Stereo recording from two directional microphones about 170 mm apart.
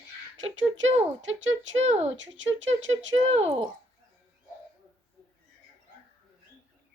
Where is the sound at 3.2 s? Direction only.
40° right (ahead or behind).